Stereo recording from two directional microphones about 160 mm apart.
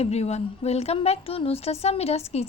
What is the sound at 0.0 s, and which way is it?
Speech, 40° left (ahead or behind).